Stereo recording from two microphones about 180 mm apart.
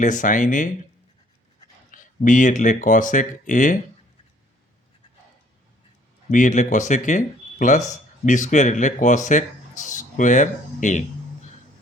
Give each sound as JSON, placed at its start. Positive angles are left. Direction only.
{"t": 0.0, "sound": "speech", "side_deg": 45}
{"t": 1.9, "sound": "speech", "side_deg": 45}
{"t": 6.3, "sound": "speech", "side_deg": 45}